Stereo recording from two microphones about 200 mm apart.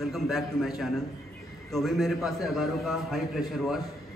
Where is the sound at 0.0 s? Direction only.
Centre (ahead or behind).